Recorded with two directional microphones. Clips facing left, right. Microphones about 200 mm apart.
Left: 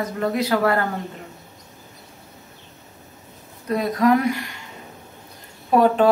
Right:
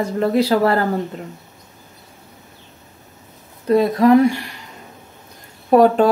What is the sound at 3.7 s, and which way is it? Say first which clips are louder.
Speech: right 6 dB; 30° right (ahead or behind).